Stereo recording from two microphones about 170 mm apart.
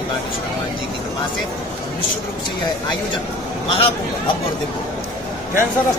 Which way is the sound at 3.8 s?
30° left (ahead or behind).